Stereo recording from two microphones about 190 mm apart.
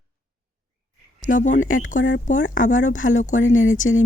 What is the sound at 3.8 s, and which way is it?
Speech, 65° left (ahead or behind).